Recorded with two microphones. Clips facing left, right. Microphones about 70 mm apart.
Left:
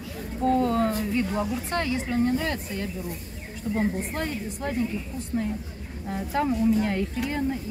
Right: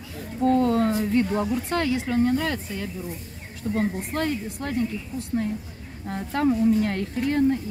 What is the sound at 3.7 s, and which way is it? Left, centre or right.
Speech, centre.